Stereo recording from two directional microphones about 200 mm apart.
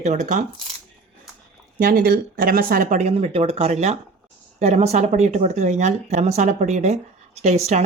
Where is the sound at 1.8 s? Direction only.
45° right (ahead or behind).